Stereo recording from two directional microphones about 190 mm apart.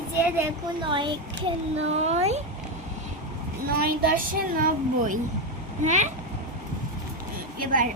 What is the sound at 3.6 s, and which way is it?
A woman's voice, 55° right (ahead or behind).